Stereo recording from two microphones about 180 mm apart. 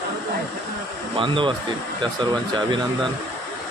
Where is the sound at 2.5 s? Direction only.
25° right (ahead or behind).